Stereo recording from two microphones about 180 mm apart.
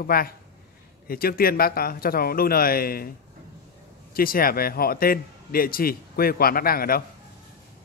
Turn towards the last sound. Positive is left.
turn(degrees=55)  # may be behind; listen again after turning